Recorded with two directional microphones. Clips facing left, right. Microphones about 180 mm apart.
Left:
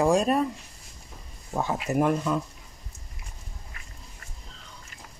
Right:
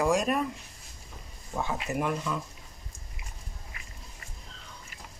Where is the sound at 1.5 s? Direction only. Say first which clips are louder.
Left 5 dB; 40° left (ahead or behind).